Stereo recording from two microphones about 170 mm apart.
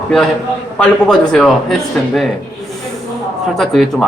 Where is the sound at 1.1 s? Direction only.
Centre (ahead or behind).